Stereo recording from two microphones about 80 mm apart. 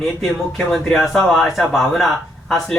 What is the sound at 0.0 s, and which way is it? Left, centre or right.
Speech, centre.